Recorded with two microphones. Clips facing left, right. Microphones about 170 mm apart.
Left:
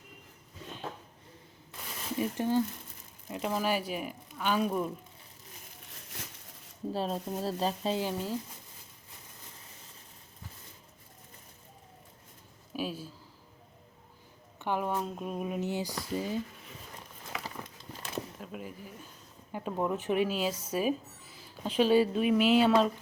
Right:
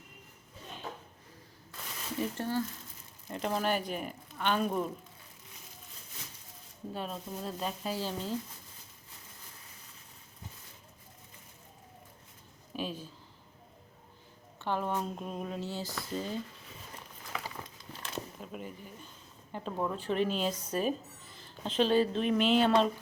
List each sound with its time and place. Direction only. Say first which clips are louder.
2.1 s speech: left 4 dB; 15° left (ahead or behind)
3.2 s speech: left 1 dB; 5° left (ahead or behind)
6.9 s speech: left 5 dB; 35° left (ahead or behind)
7.9 s speech: left 2 dB; 10° left (ahead or behind)
12.7 s a sound: left 2 dB; 5° left (ahead or behind)
14.6 s speech: left 1 dB; 10° left (ahead or behind)
14.9 s speech: left 2 dB; centre (ahead or behind)
18.1 s a sound: left 2 dB; 5° left (ahead or behind)
19.5 s speech: left 3 dB; 10° left (ahead or behind)